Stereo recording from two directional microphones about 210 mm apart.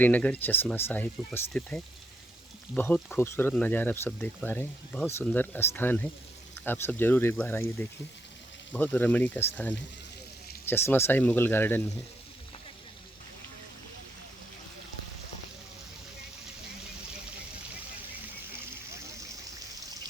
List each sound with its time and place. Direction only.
0.0 s speech: 5° left (ahead or behind)
8.7 s speech: 10° left (ahead or behind)